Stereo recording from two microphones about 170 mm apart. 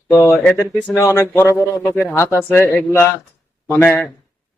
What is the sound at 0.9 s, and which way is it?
Speech, 15° left (ahead or behind).